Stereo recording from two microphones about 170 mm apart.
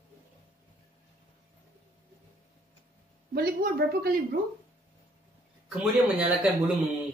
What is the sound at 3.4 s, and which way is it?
A woman's voice, 65° right (ahead or behind).